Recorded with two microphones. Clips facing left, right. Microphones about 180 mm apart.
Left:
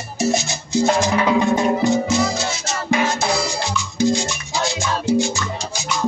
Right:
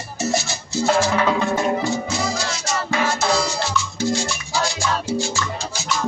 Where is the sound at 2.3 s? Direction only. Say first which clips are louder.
Even; 20° left (ahead or behind).